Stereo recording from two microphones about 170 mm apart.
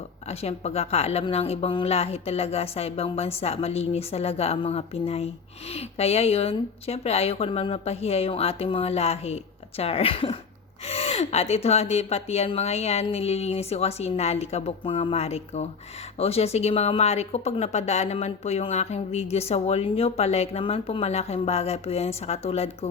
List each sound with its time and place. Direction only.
0.3 s speech: 40° left (ahead or behind)